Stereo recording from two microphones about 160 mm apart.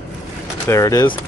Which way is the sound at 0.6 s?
20° left (ahead or behind).